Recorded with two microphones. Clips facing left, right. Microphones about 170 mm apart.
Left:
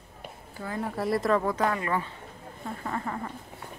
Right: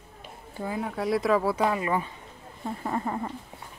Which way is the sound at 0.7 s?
Centre (ahead or behind).